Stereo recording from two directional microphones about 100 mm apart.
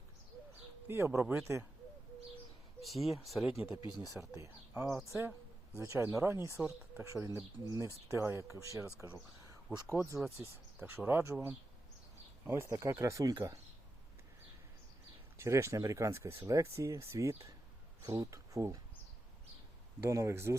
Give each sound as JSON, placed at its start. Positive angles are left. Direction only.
{"t": 0.9, "sound": "speech", "side_deg": -25}
{"t": 2.8, "sound": "speech", "side_deg": 0}
{"t": 3.6, "sound": "speech", "side_deg": 60}
{"t": 4.4, "sound": "speech", "side_deg": -25}
{"t": 7.6, "sound": "speech", "side_deg": -40}
{"t": 8.0, "sound": "speech", "side_deg": -25}
{"t": 15.4, "sound": "speech", "side_deg": -30}
{"t": 20.0, "sound": "speech", "side_deg": -30}